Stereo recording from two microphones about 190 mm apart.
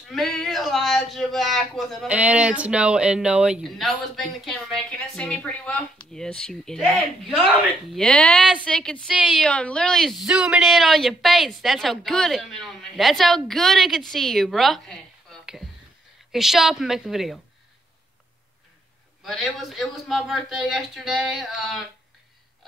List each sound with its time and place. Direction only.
0.1 s speech: centre (ahead or behind)
16.3 s speech: centre (ahead or behind)
19.2 s speech: centre (ahead or behind)